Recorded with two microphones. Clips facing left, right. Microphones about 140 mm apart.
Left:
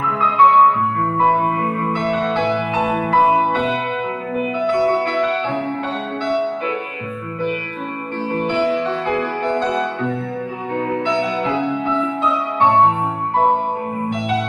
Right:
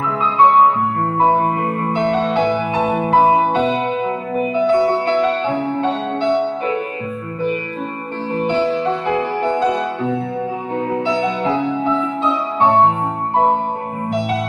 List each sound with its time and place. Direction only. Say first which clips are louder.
1.2 s music: right 2 dB; 25° right (ahead or behind)
8.3 s music: right 1 dB; 25° right (ahead or behind)
10.9 s music: right 1 dB; 30° right (ahead or behind)